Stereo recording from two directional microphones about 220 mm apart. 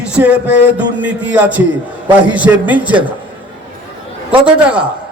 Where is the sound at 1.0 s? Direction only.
5° right (ahead or behind).